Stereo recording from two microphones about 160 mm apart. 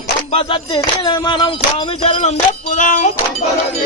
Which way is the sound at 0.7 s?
25° left (ahead or behind).